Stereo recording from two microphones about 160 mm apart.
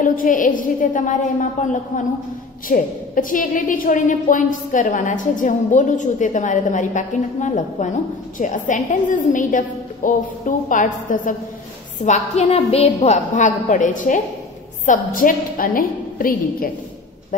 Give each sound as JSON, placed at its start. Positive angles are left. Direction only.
{"t": 0.0, "sound": "a woman's voice", "side_deg": 55}